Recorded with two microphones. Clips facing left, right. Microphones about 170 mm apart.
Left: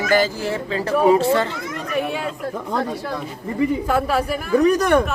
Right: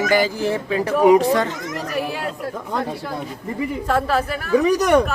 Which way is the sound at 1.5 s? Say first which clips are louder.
Right 1 dB; 45° right (ahead or behind).